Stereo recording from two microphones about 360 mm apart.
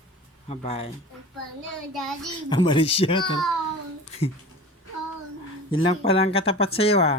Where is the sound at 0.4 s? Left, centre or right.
Centre.